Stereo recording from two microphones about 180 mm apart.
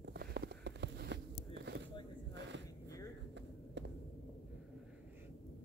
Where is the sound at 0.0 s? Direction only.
70° right (ahead or behind).